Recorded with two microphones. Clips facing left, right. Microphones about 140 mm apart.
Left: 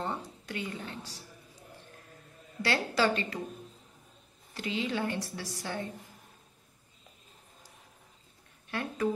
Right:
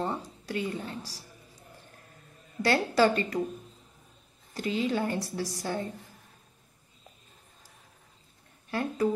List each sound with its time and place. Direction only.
0.0 s a woman's voice: 30° right (ahead or behind)
2.6 s a woman's voice: 45° right (ahead or behind)
4.6 s a woman's voice: 40° right (ahead or behind)
8.6 s speech: 35° right (ahead or behind)